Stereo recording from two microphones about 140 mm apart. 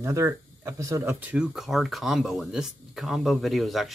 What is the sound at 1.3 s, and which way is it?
Speech, 5° right (ahead or behind).